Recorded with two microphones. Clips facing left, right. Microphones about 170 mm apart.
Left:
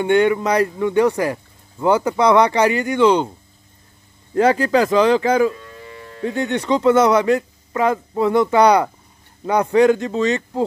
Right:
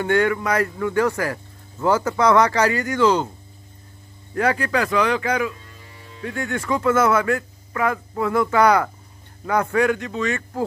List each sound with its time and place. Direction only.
0.0 s speech: 20° left (ahead or behind)
4.3 s speech: 25° left (ahead or behind)
5.6 s music: 70° left (ahead or behind)
6.2 s speech: 25° left (ahead or behind)